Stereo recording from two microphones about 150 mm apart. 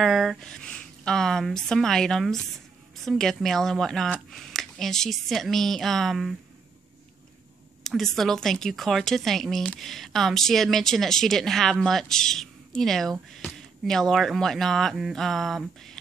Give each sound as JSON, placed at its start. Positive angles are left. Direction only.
{"t": 0.0, "sound": "a woman's voice", "side_deg": 0}
{"t": 7.8, "sound": "a woman's voice", "side_deg": 0}